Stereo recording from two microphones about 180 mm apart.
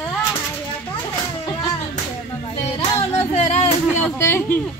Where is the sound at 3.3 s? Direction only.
35° left (ahead or behind).